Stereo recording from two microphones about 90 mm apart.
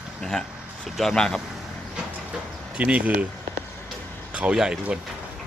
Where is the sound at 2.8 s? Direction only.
15° right (ahead or behind).